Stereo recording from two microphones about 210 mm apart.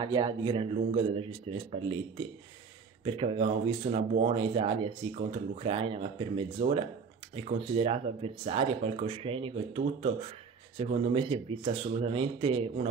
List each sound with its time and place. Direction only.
0.0 s speech: 20° right (ahead or behind)
3.0 s speech: 25° right (ahead or behind)